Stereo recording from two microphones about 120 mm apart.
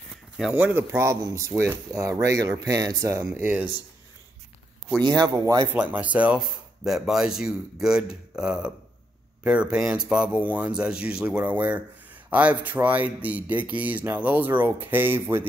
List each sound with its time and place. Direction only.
0.4 s speech: 5° right (ahead or behind)
0.7 s speech: 20° right (ahead or behind)
3.3 s speech: 15° right (ahead or behind)
5.2 s speech: 30° right (ahead or behind)
5.7 s speech: 15° right (ahead or behind)